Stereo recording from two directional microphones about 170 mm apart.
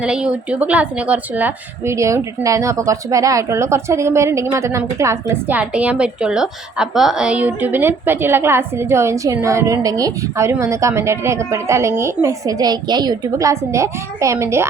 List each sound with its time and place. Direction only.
0.0 s speech: 5° right (ahead or behind)